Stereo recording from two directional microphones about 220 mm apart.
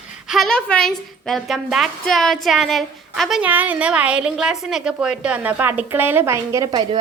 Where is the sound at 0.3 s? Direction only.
Centre (ahead or behind).